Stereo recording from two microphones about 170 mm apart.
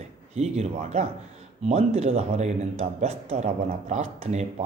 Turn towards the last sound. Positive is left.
turn(degrees=-40)  # may be behind; listen again after turning